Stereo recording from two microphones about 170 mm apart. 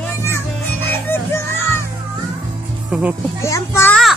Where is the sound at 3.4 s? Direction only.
15° left (ahead or behind).